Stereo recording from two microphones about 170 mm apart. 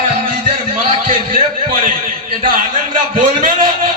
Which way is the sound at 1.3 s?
55° right (ahead or behind).